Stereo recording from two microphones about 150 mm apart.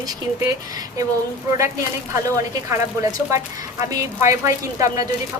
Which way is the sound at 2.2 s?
20° right (ahead or behind).